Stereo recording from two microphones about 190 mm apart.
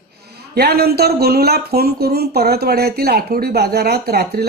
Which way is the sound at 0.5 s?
55° right (ahead or behind).